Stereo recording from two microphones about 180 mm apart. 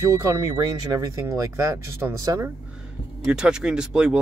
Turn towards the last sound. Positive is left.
turn(degrees=-5)  # may be behind; listen again after turning